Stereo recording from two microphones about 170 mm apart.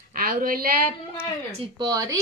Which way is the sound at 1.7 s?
20° right (ahead or behind).